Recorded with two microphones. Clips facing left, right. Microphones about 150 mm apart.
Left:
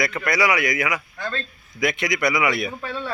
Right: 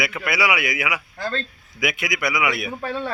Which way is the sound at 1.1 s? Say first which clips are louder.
Right 2 dB; 30° right (ahead or behind).